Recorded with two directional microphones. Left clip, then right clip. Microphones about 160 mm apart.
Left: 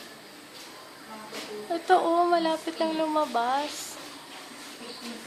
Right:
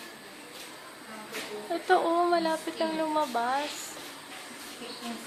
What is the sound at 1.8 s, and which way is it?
Speech, 15° left (ahead or behind).